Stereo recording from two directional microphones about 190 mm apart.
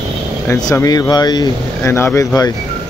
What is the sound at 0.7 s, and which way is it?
Speech, 20° left (ahead or behind).